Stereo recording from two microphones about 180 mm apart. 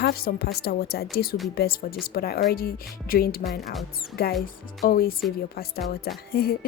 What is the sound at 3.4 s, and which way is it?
Speech, centre (ahead or behind).